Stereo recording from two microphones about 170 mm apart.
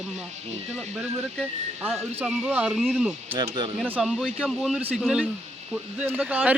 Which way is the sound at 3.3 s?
25° right (ahead or behind).